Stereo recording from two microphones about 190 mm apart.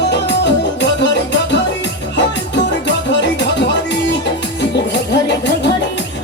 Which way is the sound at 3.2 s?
65° left (ahead or behind).